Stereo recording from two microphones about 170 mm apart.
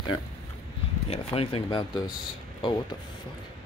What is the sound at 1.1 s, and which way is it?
Speech, 35° left (ahead or behind).